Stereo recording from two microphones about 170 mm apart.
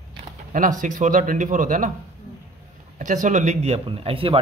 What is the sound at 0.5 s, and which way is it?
Speech, 50° right (ahead or behind).